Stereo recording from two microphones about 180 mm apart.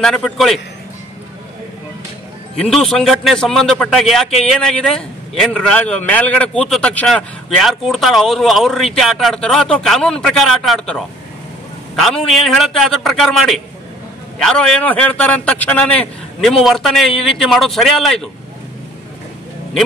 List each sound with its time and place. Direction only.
0.0 s a man's voice: centre (ahead or behind)
2.6 s a man's voice: centre (ahead or behind)